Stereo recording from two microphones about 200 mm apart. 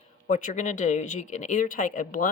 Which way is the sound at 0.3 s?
40° left (ahead or behind).